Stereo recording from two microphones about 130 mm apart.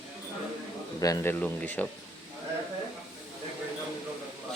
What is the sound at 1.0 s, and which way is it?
Speech, 30° left (ahead or behind).